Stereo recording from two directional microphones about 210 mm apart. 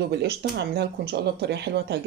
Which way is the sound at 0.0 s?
50° right (ahead or behind).